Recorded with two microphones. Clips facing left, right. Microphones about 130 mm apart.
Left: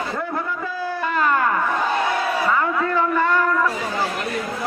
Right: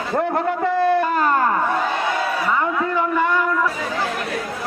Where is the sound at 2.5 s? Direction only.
15° right (ahead or behind).